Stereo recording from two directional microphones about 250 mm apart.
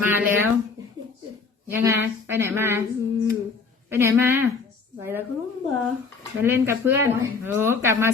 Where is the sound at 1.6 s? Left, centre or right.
Centre.